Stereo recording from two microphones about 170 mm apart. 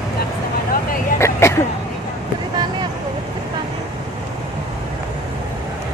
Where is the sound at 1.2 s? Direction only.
15° left (ahead or behind).